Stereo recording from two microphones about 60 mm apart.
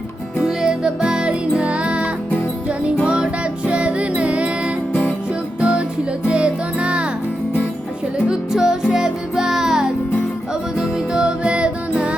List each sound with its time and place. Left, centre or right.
0.4 s music: centre
8.3 s music: centre